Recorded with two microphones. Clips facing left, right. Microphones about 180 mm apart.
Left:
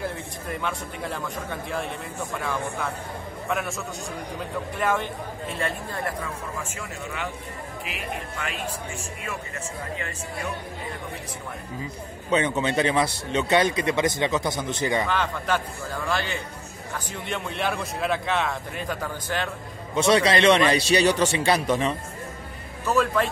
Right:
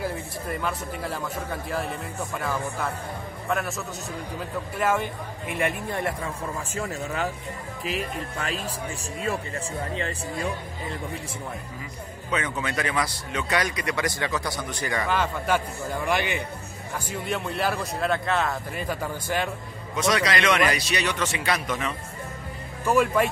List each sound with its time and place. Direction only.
0.0 s speech: 5° right (ahead or behind); by 6.1 s 20° right (ahead or behind)
6.7 s speech: 40° right (ahead or behind)
9.9 s speech: 30° right (ahead or behind)
12.3 s speech: 30° left (ahead or behind)
15.0 s speech: 10° right (ahead or behind)
16.9 s speech: 5° right (ahead or behind)
20.0 s speech: 30° left (ahead or behind)
22.8 s speech: 10° right (ahead or behind)